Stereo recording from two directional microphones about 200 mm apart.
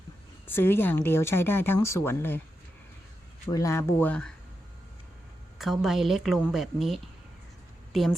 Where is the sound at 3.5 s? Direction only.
15° left (ahead or behind).